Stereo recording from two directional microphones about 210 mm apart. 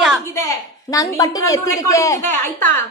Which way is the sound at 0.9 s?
15° left (ahead or behind).